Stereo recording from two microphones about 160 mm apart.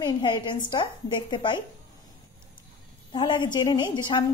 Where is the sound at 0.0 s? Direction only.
30° left (ahead or behind).